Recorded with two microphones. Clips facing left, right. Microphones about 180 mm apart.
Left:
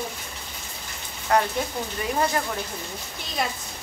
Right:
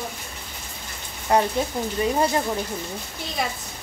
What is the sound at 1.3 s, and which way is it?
Speech, 20° right (ahead or behind).